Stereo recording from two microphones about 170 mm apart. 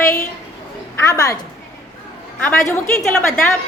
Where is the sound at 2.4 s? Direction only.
15° left (ahead or behind).